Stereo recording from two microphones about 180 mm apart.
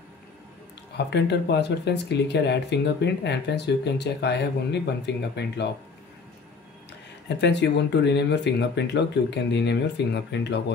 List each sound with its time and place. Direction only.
0.9 s speech: 70° left (ahead or behind)
7.2 s speech: 75° left (ahead or behind)